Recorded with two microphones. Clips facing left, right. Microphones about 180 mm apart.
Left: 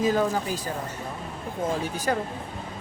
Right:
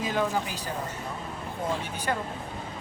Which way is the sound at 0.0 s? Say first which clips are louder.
Left 4 dB; 40° left (ahead or behind).